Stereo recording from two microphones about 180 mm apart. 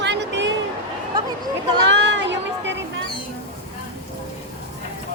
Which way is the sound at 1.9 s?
80° right.